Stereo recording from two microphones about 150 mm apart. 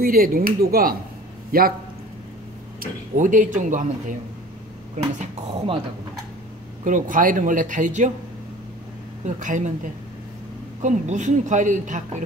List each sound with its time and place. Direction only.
0.0 s speech: 80° right
2.8 s speech: 60° right (ahead or behind)
6.8 s speech: 60° right (ahead or behind)
9.2 s speech: 55° right (ahead or behind)
10.8 s speech: 55° right (ahead or behind)